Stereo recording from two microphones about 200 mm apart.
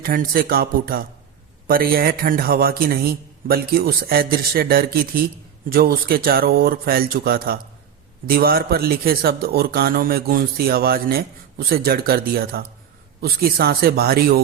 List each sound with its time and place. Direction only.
0.0 s speech: 45° right (ahead or behind)